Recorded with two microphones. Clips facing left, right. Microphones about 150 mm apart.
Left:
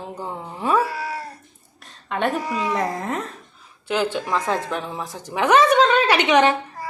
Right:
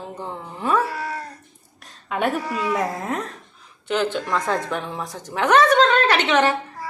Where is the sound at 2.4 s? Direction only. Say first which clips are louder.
Left 1 dB; 15° left (ahead or behind).